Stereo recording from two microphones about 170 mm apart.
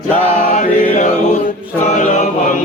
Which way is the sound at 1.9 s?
45° left (ahead or behind).